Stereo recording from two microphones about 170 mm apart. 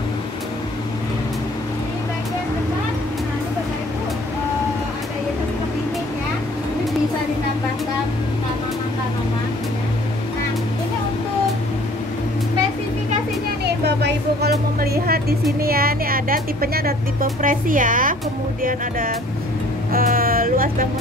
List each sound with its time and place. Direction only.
13.8 s music: 75° right (ahead or behind)
15.6 s speech: 60° right (ahead or behind)